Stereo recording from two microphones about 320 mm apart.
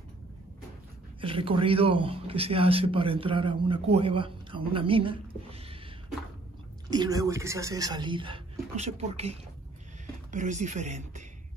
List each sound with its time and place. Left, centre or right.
1.2 s a man's voice: centre
6.9 s a man's voice: centre